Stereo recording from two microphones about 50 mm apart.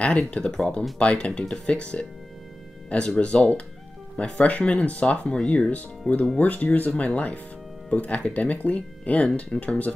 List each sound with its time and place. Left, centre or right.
0.3 s speech: centre